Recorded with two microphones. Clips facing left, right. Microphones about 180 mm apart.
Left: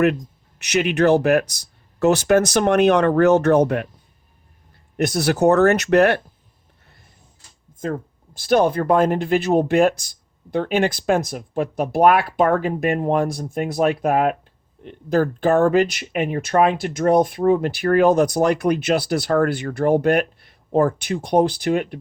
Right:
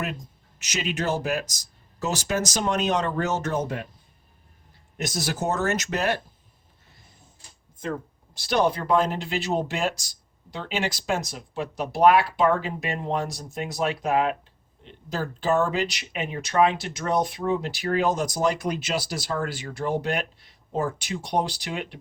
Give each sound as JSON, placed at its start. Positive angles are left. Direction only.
{"t": 0.6, "sound": "speech", "side_deg": 65}
{"t": 4.9, "sound": "speech", "side_deg": 60}
{"t": 7.8, "sound": "speech", "side_deg": 50}